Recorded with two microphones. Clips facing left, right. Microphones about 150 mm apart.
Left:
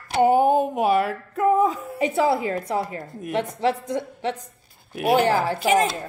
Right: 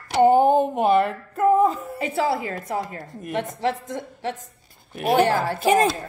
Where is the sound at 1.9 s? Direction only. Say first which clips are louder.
Left 3 dB; 20° left (ahead or behind).